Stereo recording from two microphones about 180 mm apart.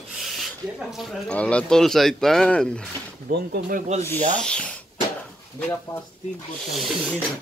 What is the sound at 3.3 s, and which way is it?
Speech, 55° right (ahead or behind).